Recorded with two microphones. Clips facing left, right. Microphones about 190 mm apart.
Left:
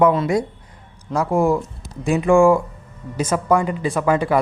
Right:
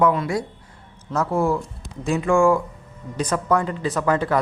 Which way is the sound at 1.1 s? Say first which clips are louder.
Left 3 dB; 10° left (ahead or behind).